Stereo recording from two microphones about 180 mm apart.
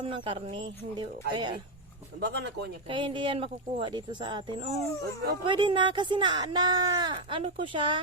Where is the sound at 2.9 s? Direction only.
25° right (ahead or behind).